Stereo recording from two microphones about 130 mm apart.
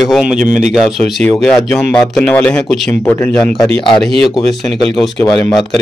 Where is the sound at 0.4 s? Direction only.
70° right (ahead or behind).